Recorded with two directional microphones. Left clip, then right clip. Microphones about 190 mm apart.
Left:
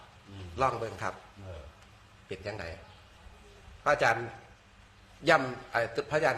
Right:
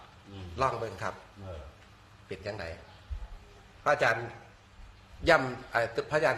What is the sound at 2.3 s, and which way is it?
Speech, 10° left (ahead or behind).